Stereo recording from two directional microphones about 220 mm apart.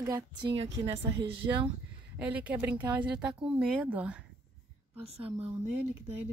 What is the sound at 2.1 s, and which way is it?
Speech, 5° right (ahead or behind).